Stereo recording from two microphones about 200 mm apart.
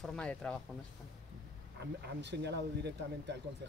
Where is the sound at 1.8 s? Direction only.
60° right (ahead or behind).